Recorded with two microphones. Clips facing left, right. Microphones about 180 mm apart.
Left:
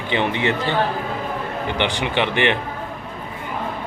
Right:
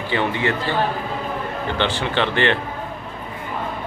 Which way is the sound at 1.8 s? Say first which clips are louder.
Even; 15° left (ahead or behind).